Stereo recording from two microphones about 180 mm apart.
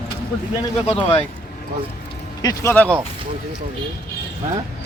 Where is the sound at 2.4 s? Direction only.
20° left (ahead or behind).